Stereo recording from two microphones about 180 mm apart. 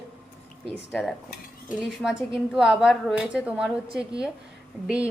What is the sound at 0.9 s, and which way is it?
Cutlery, 10° left (ahead or behind).